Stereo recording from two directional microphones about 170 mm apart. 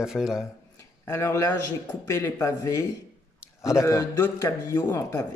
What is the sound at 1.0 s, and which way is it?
Speech, 15° left (ahead or behind).